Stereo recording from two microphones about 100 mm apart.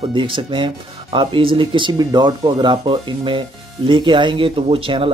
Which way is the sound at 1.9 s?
40° right (ahead or behind).